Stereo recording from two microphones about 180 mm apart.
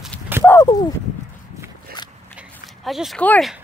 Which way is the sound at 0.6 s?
20° left (ahead or behind).